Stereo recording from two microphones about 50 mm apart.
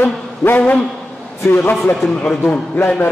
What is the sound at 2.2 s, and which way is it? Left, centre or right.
Speech, left.